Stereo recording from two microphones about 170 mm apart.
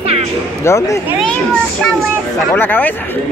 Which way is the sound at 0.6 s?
15° left (ahead or behind).